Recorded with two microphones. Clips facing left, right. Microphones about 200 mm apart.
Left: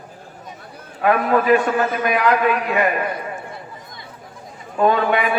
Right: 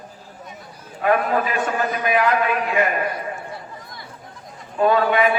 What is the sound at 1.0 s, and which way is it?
A man's voice, 50° left (ahead or behind).